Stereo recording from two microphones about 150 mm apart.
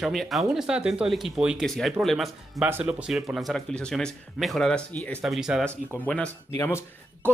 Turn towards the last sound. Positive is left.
turn(degrees=15)  # may be behind; listen again after turning